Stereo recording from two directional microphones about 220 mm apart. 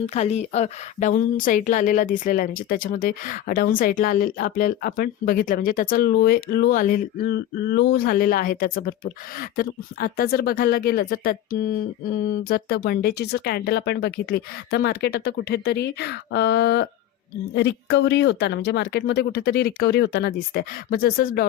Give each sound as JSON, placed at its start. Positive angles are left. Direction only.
{"t": 0.1, "sound": "a woman's voice", "side_deg": 30}